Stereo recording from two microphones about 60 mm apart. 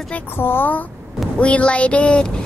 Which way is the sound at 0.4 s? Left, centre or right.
Left.